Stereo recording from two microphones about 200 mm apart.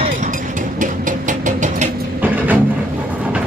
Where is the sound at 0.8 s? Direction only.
40° right (ahead or behind).